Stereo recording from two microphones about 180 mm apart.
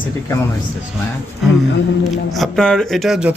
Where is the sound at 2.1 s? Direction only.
Centre (ahead or behind).